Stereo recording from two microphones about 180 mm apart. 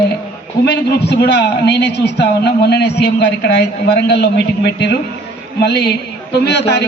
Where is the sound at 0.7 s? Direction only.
65° left (ahead or behind).